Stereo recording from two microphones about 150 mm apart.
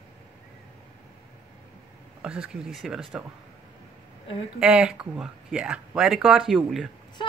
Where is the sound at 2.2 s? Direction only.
5° right (ahead or behind).